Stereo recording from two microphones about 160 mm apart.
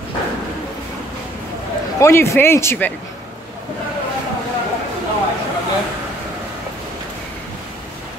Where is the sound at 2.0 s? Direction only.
15° left (ahead or behind).